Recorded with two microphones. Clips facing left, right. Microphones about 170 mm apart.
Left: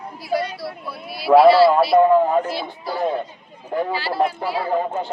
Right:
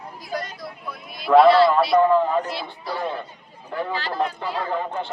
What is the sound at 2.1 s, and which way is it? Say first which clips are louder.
Speech: left 3 dB; 20° left (ahead or behind).